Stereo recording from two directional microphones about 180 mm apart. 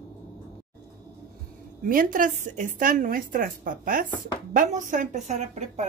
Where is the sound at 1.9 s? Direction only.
50° right (ahead or behind).